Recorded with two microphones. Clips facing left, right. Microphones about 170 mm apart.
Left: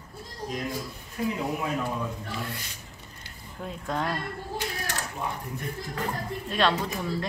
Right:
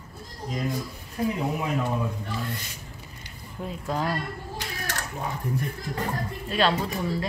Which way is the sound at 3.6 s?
Centre (ahead or behind).